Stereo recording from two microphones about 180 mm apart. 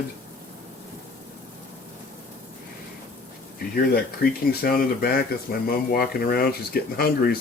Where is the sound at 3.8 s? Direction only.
55° left (ahead or behind).